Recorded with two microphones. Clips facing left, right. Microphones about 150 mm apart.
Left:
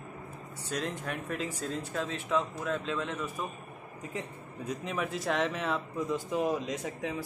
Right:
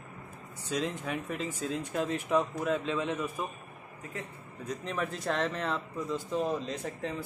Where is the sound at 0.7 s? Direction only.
5° right (ahead or behind).